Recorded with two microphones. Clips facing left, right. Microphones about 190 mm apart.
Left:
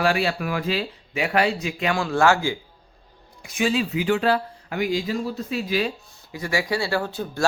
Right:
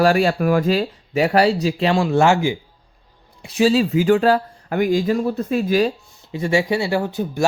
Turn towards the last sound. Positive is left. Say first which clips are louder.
# right 4 dB
turn(degrees=-20)  # may be behind; listen again after turning